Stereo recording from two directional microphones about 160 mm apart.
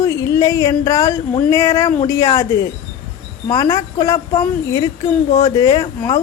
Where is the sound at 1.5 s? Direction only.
20° left (ahead or behind).